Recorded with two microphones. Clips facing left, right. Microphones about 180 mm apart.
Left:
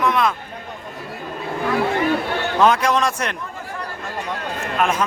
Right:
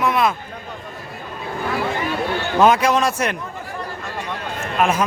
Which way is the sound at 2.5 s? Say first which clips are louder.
Right 2 dB; 5° right (ahead or behind).